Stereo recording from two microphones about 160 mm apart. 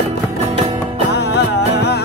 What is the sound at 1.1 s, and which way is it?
Music, 90° left.